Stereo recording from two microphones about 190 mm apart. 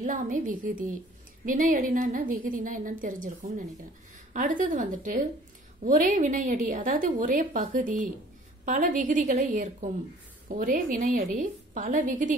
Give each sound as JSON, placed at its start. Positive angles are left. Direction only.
{"t": 0.0, "sound": "a woman's voice", "side_deg": -45}